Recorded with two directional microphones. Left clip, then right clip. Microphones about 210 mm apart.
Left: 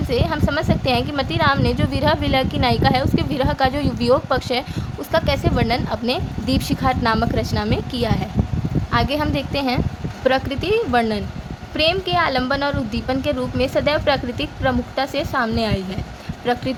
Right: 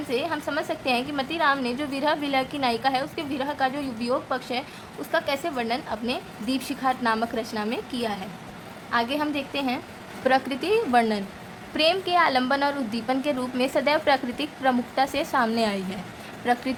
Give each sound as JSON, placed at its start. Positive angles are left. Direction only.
{"t": 0.1, "sound": "a woman's voice", "side_deg": 20}
{"t": 10.2, "sound": "a woman's voice", "side_deg": 10}